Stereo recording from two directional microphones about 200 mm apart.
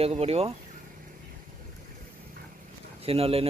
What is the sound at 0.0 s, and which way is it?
Speech, 30° right (ahead or behind).